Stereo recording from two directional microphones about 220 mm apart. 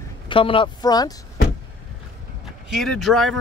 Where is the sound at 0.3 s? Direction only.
25° left (ahead or behind).